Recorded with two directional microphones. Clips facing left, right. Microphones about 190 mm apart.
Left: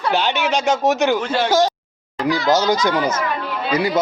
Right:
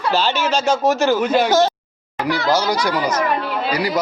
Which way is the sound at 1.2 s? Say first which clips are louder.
Right 4 dB; 10° right (ahead or behind).